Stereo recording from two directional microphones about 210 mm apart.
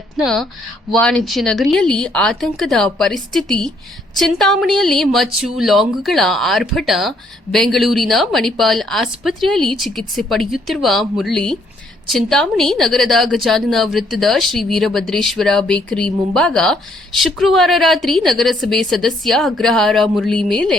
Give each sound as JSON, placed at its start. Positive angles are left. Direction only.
{"t": 0.9, "sound": "speech", "side_deg": 5}